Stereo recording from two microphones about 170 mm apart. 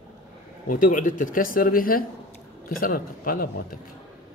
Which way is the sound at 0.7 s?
55° left (ahead or behind).